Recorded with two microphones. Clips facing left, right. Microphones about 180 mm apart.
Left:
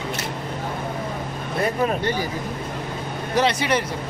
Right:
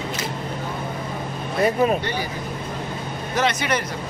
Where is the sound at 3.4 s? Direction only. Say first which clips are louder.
Left 2 dB; 30° left (ahead or behind).